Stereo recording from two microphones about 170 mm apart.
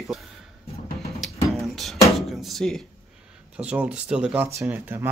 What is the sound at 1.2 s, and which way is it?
Music, centre (ahead or behind).